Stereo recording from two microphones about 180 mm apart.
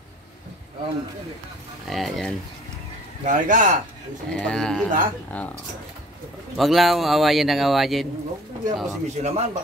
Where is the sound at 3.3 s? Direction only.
45° right (ahead or behind).